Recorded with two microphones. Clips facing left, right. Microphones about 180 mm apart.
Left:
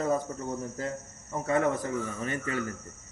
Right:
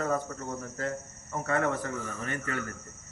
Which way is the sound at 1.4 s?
15° left (ahead or behind).